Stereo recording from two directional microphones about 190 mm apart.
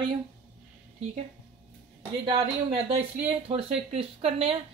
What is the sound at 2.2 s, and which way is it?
Speech, 30° right (ahead or behind).